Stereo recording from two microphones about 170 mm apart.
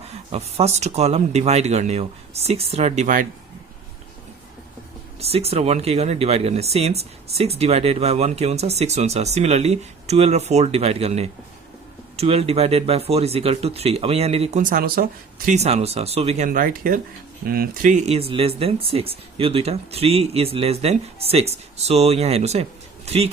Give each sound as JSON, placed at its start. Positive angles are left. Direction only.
{"t": 0.3, "sound": "speech", "side_deg": -40}
{"t": 5.3, "sound": "speech", "side_deg": -35}
{"t": 15.5, "sound": "speech", "side_deg": -40}
{"t": 16.5, "sound": "speech", "side_deg": -55}